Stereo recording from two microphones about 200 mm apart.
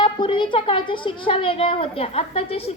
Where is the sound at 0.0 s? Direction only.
25° left (ahead or behind).